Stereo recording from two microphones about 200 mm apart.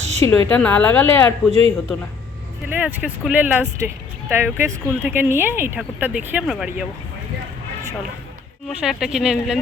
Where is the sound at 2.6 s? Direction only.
10° right (ahead or behind).